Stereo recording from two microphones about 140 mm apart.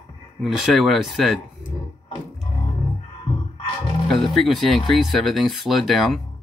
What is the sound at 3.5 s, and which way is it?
Music, 40° left (ahead or behind).